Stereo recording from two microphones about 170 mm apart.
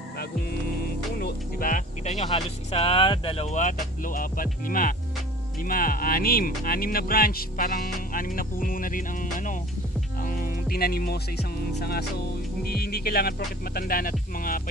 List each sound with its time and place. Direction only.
1.2 s speech: 55° left (ahead or behind)